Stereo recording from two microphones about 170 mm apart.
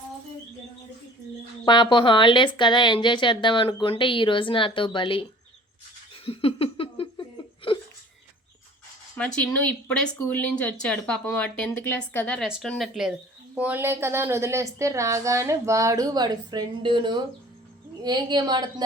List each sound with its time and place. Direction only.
1.6 s a woman's voice: 25° left (ahead or behind)
6.2 s laughter: 35° left (ahead or behind)
9.1 s a woman's voice: 5° left (ahead or behind); by 18.7 s 25° right (ahead or behind)